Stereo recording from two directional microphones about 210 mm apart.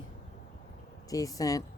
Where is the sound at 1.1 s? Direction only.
15° left (ahead or behind).